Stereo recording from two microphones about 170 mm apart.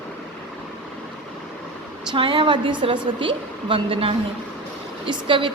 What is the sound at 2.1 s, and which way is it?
A woman's voice, 30° right (ahead or behind).